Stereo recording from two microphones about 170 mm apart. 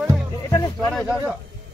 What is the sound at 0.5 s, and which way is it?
Speech, 20° left (ahead or behind).